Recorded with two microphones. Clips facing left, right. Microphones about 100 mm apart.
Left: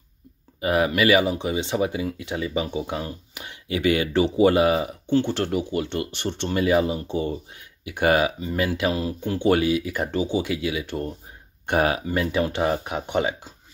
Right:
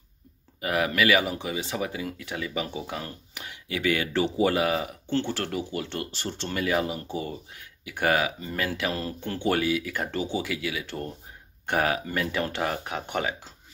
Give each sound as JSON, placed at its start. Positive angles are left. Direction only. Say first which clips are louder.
{"t": 0.6, "sound": "speech", "louder": "left 4 dB", "side_deg": 20}